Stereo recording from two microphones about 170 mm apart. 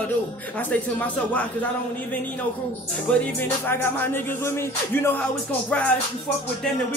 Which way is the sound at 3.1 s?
10° left (ahead or behind).